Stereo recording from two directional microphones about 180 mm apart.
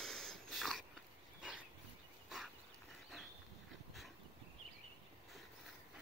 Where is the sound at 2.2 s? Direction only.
Centre (ahead or behind).